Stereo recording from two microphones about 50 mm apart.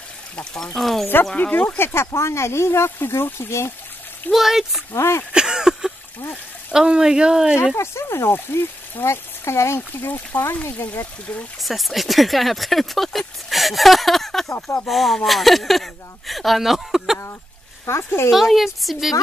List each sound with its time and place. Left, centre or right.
0.7 s speech: centre
1.3 s speech: left
1.8 s speech: left
4.3 s speech: centre
4.9 s speech: left
5.3 s a sound: centre
6.7 s speech: centre
7.7 s speech: left
8.3 s speech: left
9.0 s speech: left
11.6 s speech: centre
17.8 s speech: left
18.3 s speech: centre